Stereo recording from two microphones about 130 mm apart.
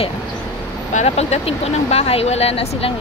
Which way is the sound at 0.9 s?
60° left (ahead or behind).